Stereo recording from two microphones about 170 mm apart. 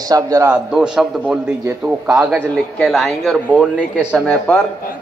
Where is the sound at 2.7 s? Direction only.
Centre (ahead or behind).